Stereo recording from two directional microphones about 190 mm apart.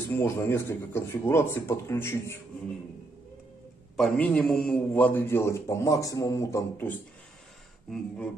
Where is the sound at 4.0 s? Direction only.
5° left (ahead or behind).